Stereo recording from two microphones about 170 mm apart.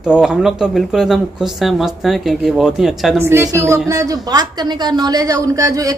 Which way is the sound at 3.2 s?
15° right (ahead or behind).